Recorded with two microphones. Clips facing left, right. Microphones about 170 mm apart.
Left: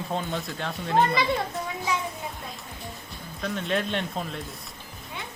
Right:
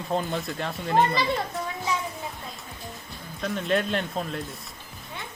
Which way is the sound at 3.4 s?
Centre (ahead or behind).